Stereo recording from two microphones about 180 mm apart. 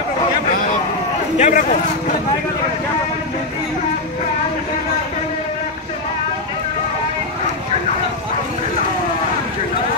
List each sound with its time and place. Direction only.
1.4 s speech: 45° left (ahead or behind)